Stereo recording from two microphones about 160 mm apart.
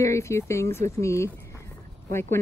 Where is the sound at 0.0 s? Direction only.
20° left (ahead or behind).